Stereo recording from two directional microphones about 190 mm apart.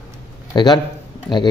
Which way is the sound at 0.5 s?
25° left (ahead or behind).